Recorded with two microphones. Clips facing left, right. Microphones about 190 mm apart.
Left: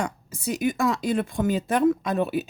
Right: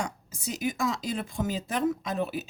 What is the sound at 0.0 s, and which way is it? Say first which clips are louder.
Speech: left 5 dB; 60° left (ahead or behind).